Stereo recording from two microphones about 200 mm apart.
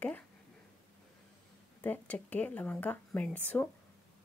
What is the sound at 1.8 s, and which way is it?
Speech, 10° left (ahead or behind).